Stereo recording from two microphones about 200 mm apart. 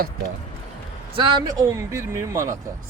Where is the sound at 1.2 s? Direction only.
20° right (ahead or behind).